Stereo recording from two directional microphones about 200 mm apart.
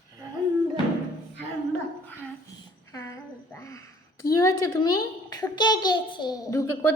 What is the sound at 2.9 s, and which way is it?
A woman's voice, 15° left (ahead or behind).